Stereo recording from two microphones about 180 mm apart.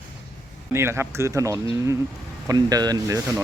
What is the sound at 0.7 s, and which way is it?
Speech, 15° right (ahead or behind).